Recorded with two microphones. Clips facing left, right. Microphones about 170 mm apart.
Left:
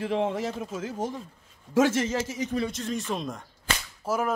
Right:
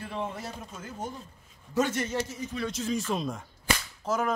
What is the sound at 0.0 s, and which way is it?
Speech, 90° left.